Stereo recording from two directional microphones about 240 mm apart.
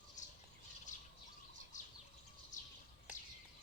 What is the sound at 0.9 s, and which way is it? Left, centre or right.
Bird, left.